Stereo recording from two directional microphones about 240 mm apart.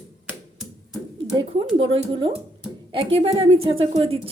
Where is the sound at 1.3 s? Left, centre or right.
Right.